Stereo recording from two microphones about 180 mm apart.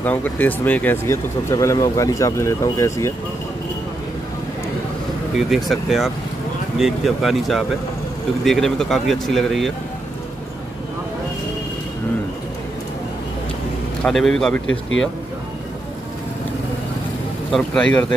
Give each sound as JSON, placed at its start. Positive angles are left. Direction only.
{"t": 0.0, "sound": "speech", "side_deg": 10}
{"t": 5.5, "sound": "speech", "side_deg": 0}
{"t": 14.0, "sound": "speech", "side_deg": 5}
{"t": 17.5, "sound": "speech", "side_deg": 5}